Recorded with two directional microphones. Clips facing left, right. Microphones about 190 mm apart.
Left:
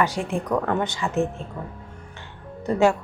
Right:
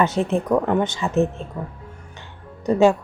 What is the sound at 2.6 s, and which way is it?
Speech, 15° right (ahead or behind).